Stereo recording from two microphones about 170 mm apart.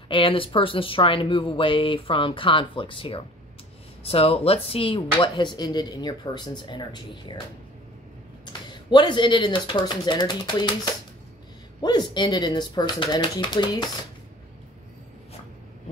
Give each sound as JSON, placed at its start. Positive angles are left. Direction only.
{"t": 0.1, "sound": "speech", "side_deg": 30}
{"t": 8.5, "sound": "speech", "side_deg": 25}
{"t": 11.8, "sound": "speech", "side_deg": 25}